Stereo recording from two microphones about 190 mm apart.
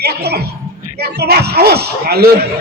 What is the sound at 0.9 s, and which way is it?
Speech, 55° right (ahead or behind).